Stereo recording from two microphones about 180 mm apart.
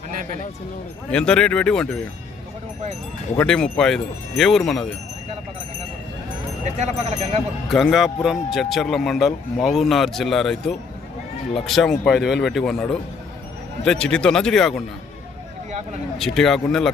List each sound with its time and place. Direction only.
1.1 s speech: 5° left (ahead or behind)
3.3 s speech: 5° left (ahead or behind)
6.7 s speech: 40° right (ahead or behind)
7.7 s speech: centre (ahead or behind)
16.1 s speech: centre (ahead or behind)